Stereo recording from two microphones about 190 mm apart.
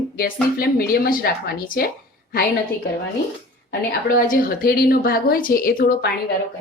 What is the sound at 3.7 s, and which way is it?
Speech, 50° left (ahead or behind).